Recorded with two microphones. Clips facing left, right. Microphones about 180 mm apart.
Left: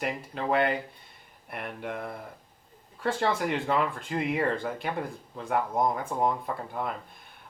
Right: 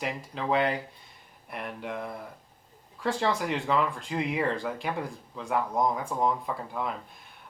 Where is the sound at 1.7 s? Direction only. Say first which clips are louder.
Even; 50° left (ahead or behind).